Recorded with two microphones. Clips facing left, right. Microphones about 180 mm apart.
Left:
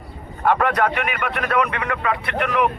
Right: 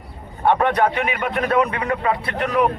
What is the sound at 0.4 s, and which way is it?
A man's voice, 25° right (ahead or behind).